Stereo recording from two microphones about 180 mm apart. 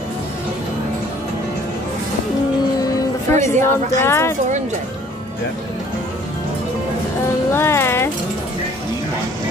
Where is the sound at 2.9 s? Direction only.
15° left (ahead or behind).